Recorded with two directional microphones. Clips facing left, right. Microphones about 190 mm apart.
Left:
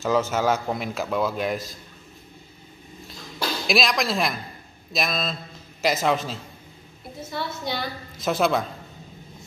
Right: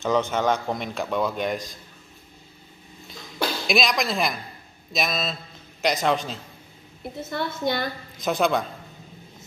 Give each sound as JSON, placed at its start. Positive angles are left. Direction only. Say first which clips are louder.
{"t": 0.0, "sound": "a man's voice", "louder": "even", "side_deg": 5}
{"t": 3.6, "sound": "a man's voice", "louder": "left 1 dB", "side_deg": 0}
{"t": 7.2, "sound": "a woman's voice", "louder": "right 4 dB", "side_deg": -50}
{"t": 8.2, "sound": "a man's voice", "louder": "even", "side_deg": 0}